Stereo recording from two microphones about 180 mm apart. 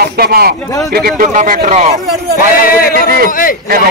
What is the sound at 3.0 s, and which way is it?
Speech, 55° right (ahead or behind).